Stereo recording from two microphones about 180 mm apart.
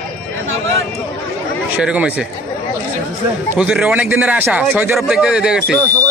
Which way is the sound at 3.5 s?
5° right (ahead or behind).